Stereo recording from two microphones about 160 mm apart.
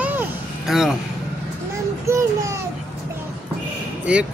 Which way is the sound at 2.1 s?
20° right (ahead or behind).